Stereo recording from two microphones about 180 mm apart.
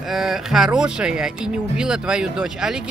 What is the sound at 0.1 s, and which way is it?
Speech, centre (ahead or behind).